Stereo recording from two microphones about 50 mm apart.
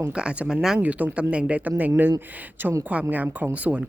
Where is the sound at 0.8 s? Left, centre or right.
Right.